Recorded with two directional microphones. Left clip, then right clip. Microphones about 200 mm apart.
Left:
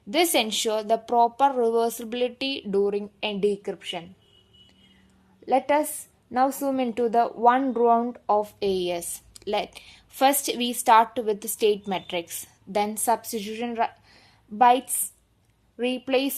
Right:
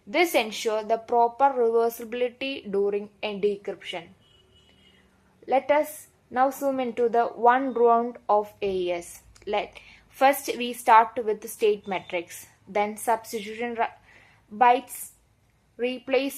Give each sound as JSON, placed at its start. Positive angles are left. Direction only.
{"t": 0.1, "sound": "speech", "side_deg": 30}
{"t": 5.5, "sound": "a woman's voice", "side_deg": 30}